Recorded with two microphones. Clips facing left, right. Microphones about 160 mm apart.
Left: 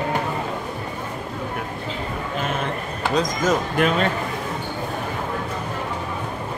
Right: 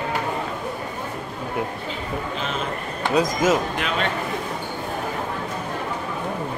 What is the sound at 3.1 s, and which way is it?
Speech, 10° right (ahead or behind).